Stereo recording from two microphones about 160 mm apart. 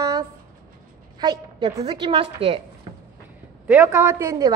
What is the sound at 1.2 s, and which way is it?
A woman's voice, 25° right (ahead or behind).